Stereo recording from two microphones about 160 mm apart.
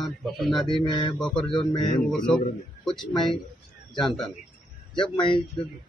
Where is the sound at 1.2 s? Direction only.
5° left (ahead or behind).